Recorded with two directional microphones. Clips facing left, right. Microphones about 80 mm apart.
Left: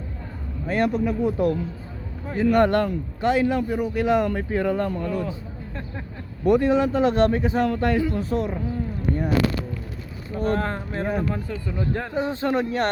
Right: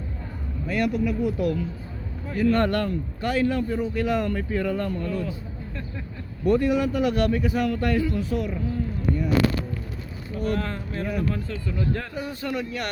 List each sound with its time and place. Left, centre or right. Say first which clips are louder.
0.7 s a man's voice: left 2 dB; left; by 5.3 s centre
6.4 s a man's voice: left 3 dB; left
8.2 s speech: left 2 dB; left
10.3 s speech: left 3 dB; left
11.3 s a man's voice: left 1 dB; left